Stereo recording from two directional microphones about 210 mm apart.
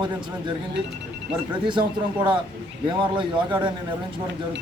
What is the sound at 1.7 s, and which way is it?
Speech, 25° right (ahead or behind).